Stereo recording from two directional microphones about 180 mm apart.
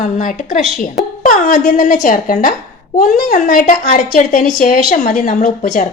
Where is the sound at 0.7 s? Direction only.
Centre (ahead or behind).